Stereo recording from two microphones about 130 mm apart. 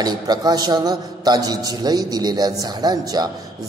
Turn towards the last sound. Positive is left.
turn(degrees=-30)  # may be behind; listen again after turning